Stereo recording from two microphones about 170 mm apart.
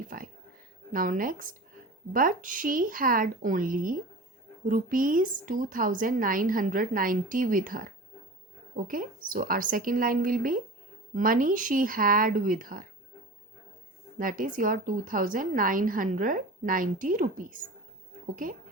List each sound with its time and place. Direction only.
0.1 s a woman's voice: 55° right (ahead or behind)
14.2 s a woman's voice: 55° right (ahead or behind)